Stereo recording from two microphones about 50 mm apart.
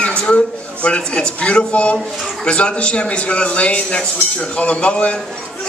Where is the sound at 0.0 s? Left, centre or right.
Left.